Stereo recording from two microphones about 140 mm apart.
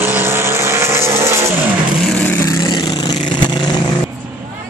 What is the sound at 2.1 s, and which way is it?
Vehicle, 15° left (ahead or behind).